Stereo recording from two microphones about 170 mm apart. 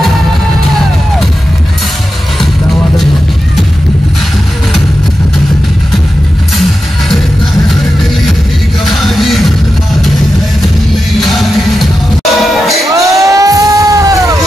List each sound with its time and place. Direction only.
7.6 s music: centre (ahead or behind)
11.1 s music: centre (ahead or behind)
12.9 s music: 20° right (ahead or behind)